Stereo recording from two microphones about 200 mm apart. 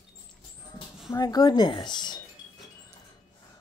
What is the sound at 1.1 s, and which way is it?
Speech, 20° left (ahead or behind).